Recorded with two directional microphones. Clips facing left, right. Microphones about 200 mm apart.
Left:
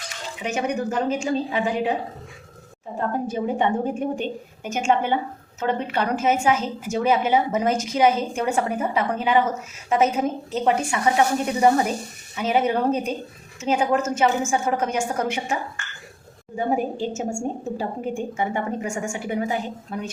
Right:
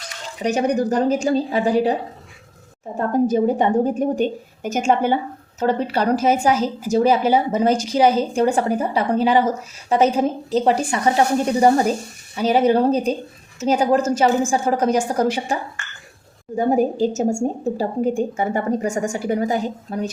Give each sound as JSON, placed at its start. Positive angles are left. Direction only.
{"t": 0.3, "sound": "a woman's voice", "side_deg": -35}
{"t": 3.1, "sound": "a woman's voice", "side_deg": -40}
{"t": 16.6, "sound": "a woman's voice", "side_deg": -40}